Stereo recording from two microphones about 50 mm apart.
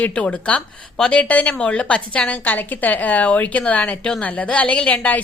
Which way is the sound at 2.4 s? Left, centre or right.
Left.